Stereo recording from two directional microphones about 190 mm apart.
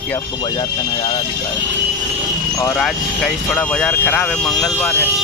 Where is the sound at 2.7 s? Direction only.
5° left (ahead or behind).